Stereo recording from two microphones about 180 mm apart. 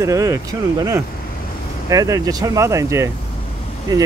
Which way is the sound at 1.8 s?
20° right (ahead or behind).